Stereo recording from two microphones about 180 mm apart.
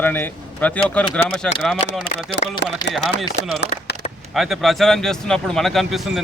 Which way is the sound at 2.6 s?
75° left (ahead or behind).